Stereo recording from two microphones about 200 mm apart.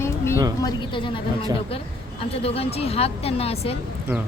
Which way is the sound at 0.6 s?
25° left (ahead or behind).